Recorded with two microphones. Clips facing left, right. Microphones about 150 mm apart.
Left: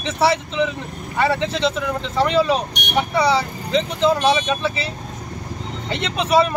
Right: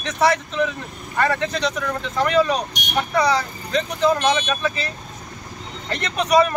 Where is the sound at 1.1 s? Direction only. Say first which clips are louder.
Left 1 dB; 5° left (ahead or behind).